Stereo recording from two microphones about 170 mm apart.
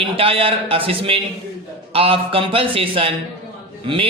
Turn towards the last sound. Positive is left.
turn(degrees=-30)  # may be behind; listen again after turning